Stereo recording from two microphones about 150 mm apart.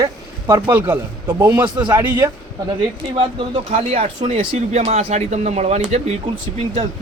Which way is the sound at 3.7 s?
45° right (ahead or behind).